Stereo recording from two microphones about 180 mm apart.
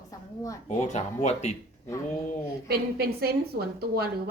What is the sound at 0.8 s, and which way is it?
Speech, 40° left (ahead or behind).